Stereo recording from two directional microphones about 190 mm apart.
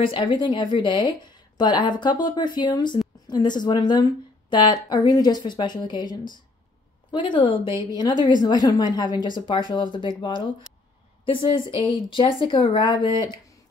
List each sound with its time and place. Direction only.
0.0 s a woman's voice: 25° left (ahead or behind)
7.6 s a woman's voice: 15° right (ahead or behind)
7.9 s a woman's voice: 20° left (ahead or behind)